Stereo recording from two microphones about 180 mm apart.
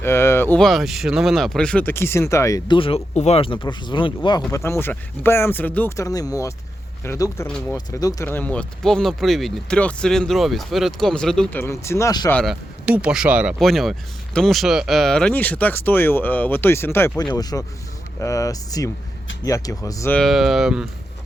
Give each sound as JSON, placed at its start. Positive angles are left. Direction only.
{"t": 0.0, "sound": "speech", "side_deg": 15}
{"t": 4.5, "sound": "speech", "side_deg": 15}
{"t": 6.1, "sound": "speech", "side_deg": 20}
{"t": 7.4, "sound": "speech", "side_deg": 5}
{"t": 7.9, "sound": "speech", "side_deg": 20}
{"t": 11.6, "sound": "speech", "side_deg": 15}
{"t": 12.3, "sound": "speech", "side_deg": 5}
{"t": 12.8, "sound": "speech", "side_deg": -5}
{"t": 20.1, "sound": "speech", "side_deg": 0}